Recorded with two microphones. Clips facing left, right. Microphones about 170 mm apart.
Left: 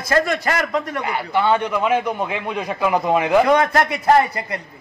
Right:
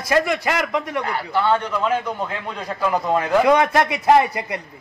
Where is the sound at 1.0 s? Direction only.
15° left (ahead or behind).